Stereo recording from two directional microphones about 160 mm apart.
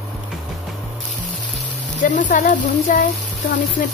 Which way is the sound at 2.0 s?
55° left (ahead or behind).